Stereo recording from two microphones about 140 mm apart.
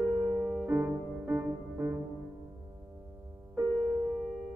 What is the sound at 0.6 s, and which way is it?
Music, 10° right (ahead or behind).